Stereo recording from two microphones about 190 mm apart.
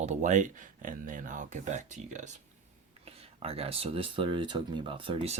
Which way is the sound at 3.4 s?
30° right (ahead or behind).